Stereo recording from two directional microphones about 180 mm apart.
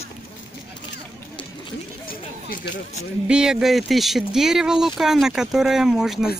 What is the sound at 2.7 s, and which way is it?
Speech, 40° left (ahead or behind).